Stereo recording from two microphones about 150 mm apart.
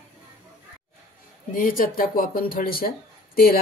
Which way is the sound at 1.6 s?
70° left (ahead or behind).